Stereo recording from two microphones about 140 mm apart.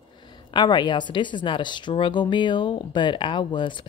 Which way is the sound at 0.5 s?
30° left (ahead or behind).